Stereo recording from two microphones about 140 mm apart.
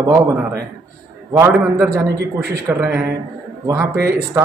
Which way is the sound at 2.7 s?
10° right (ahead or behind).